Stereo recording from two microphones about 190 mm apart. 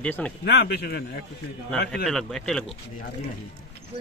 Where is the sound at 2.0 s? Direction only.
5° left (ahead or behind).